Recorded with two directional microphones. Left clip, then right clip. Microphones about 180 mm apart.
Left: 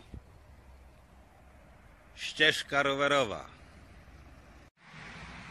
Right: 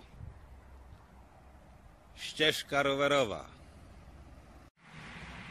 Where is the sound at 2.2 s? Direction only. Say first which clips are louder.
Left 3 dB; 5° right (ahead or behind).